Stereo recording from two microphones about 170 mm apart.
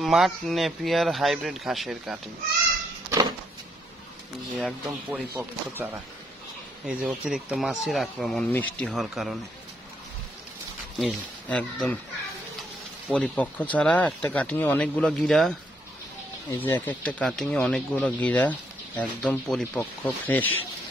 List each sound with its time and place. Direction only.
0.0 s speech: centre (ahead or behind)
3.1 s a sound: 25° right (ahead or behind)
4.6 s speech: 5° right (ahead or behind)
11.0 s speech: 5° left (ahead or behind)
13.1 s speech: 5° left (ahead or behind)
16.5 s speech: 15° left (ahead or behind)